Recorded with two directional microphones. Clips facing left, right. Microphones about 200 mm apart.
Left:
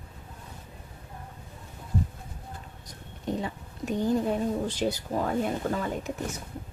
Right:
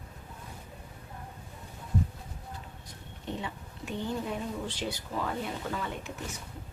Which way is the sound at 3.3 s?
40° left (ahead or behind).